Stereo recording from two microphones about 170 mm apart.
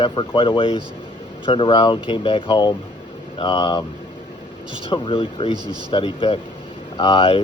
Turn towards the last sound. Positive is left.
turn(degrees=30)  # may be behind; listen again after turning